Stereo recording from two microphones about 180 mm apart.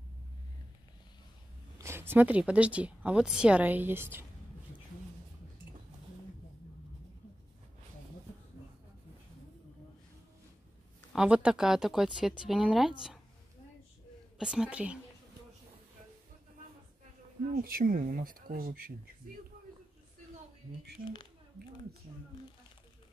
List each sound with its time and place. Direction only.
1.8 s speech: 15° right (ahead or behind)
11.1 s speech: 5° right (ahead or behind)
14.4 s speech: 5° right (ahead or behind)
17.6 s speech: 55° right (ahead or behind)
21.0 s speech: 55° right (ahead or behind)